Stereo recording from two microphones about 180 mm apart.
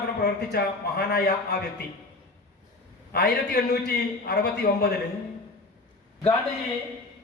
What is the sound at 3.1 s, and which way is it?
A man's voice, 65° left (ahead or behind).